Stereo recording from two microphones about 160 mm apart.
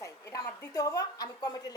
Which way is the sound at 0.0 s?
20° left (ahead or behind).